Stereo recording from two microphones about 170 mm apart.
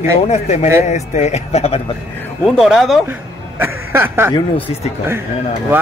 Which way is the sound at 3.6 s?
15° right (ahead or behind).